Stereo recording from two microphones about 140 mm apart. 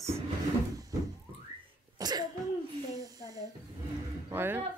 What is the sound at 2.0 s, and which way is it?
Cough, 30° right (ahead or behind).